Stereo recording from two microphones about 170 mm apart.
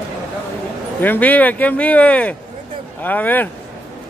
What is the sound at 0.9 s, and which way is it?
Speech, 10° left (ahead or behind).